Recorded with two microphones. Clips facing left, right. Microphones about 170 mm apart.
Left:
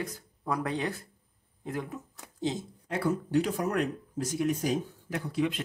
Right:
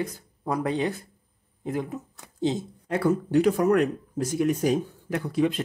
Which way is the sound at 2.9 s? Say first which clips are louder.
Right 5 dB; 65° right (ahead or behind).